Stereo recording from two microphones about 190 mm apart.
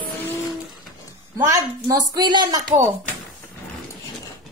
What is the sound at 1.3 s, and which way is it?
Speech, 15° right (ahead or behind).